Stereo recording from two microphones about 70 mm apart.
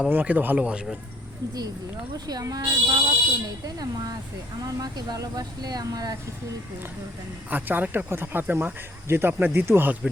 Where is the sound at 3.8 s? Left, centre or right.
Right.